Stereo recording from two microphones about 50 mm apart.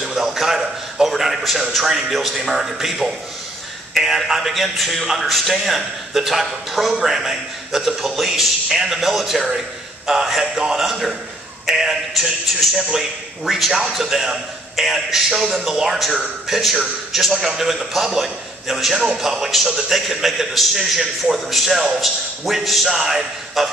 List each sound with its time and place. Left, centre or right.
0.0 s a man's voice: centre
10.4 s a man's voice: centre
10.8 s a man's voice: centre
13.5 s a man's voice: centre